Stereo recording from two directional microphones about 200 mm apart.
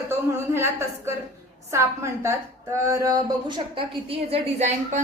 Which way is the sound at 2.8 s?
15° right (ahead or behind).